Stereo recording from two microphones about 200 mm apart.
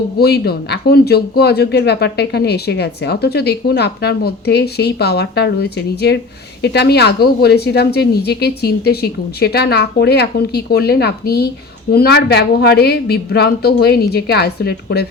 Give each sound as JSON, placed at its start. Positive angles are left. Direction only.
{"t": 0.2, "sound": "speech", "side_deg": 55}